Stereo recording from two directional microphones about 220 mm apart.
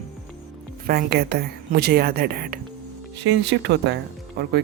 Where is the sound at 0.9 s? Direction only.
45° right (ahead or behind).